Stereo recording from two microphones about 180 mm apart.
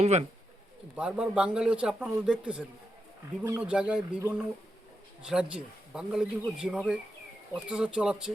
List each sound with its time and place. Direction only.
0.0 s speech: 35° right (ahead or behind)
0.9 s speech: 5° right (ahead or behind)